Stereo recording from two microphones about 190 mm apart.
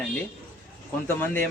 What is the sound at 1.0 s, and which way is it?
Speech, 10° left (ahead or behind).